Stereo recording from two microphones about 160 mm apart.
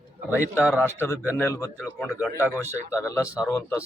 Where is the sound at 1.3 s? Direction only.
15° left (ahead or behind).